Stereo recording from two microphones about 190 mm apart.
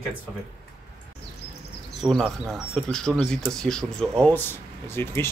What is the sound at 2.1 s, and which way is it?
Speech, 5° left (ahead or behind).